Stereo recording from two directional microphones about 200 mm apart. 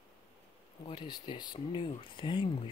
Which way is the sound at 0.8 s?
20° left (ahead or behind).